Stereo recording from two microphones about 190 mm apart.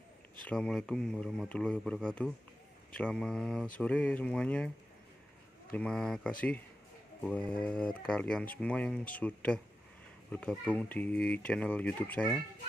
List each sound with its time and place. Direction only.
0.4 s speech: 5° left (ahead or behind)
5.7 s speech: 5° left (ahead or behind)